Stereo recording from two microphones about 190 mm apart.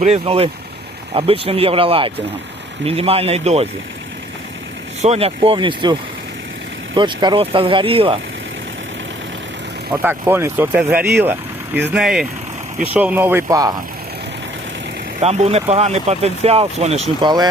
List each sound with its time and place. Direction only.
0.0 s speech: 35° right (ahead or behind)
5.0 s speech: 30° right (ahead or behind)
9.9 s speech: 10° right (ahead or behind)
15.2 s speech: 35° right (ahead or behind)